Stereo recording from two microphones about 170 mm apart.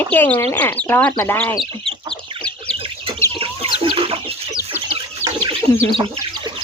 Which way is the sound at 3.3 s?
30° right (ahead or behind).